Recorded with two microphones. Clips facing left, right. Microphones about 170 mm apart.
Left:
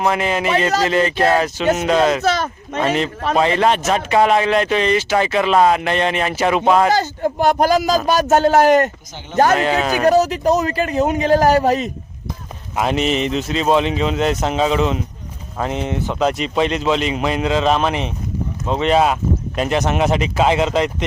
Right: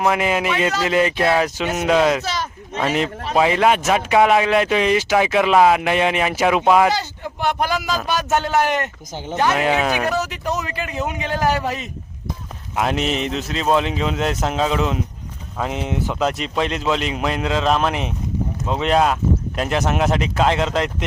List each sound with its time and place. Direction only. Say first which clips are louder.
0.0 s speech: left 1 dB; 5° right (ahead or behind)
2.2 s speech: left 7 dB; 55° left (ahead or behind)
2.7 s speech: left 2 dB; 10° right (ahead or behind)
6.9 s speech: left 8 dB; 45° left (ahead or behind)
9.6 s speech: left 1 dB; 10° right (ahead or behind)
10.1 s speech: left 9 dB; 35° left (ahead or behind)
12.7 s speech: left 3 dB; centre (ahead or behind)